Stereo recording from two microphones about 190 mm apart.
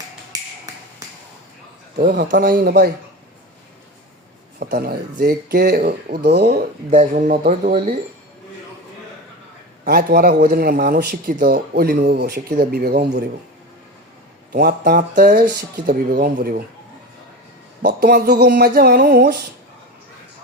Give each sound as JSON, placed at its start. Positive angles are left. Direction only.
{"t": 0.3, "sound": "finger snapping", "side_deg": -20}
{"t": 2.0, "sound": "a man's voice", "side_deg": -45}
{"t": 4.6, "sound": "speech", "side_deg": -50}
{"t": 6.9, "sound": "a man's voice", "side_deg": -40}
{"t": 9.8, "sound": "a man's voice", "side_deg": -50}
{"t": 14.5, "sound": "a man's voice", "side_deg": -50}
{"t": 17.8, "sound": "speech", "side_deg": -55}